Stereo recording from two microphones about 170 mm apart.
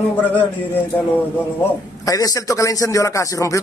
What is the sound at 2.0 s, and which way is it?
A man's voice, 20° left (ahead or behind).